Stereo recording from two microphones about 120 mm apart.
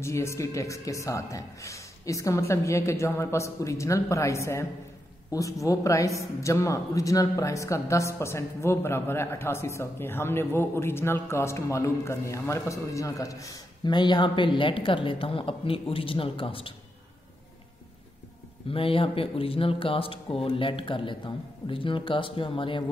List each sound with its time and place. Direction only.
0.0 s a woman's voice: 25° left (ahead or behind); by 16.7 s 45° left (ahead or behind)
18.7 s speech: 50° left (ahead or behind)